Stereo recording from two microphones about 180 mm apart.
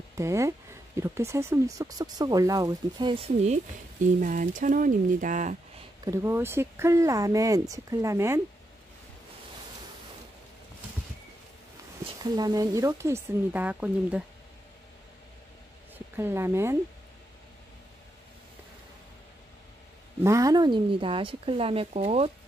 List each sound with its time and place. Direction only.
0.2 s speech: 15° right (ahead or behind); by 3.5 s 35° right (ahead or behind)
4.2 s speech: 45° right (ahead or behind)
6.0 s speech: 15° right (ahead or behind)
12.2 s speech: 20° right (ahead or behind)
16.2 s speech: 15° right (ahead or behind)
20.2 s speech: 20° right (ahead or behind); by 22.3 s 35° right (ahead or behind)